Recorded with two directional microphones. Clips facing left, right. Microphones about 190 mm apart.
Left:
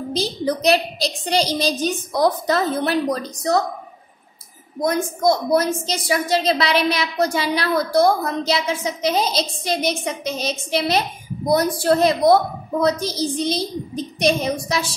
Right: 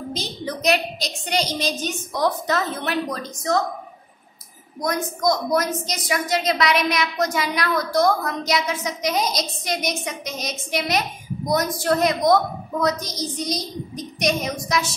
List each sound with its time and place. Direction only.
0.1 s a woman's voice: 35° left (ahead or behind)
4.7 s a woman's voice: 30° left (ahead or behind)